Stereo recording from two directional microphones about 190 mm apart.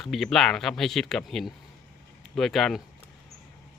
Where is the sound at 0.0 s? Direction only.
Centre (ahead or behind).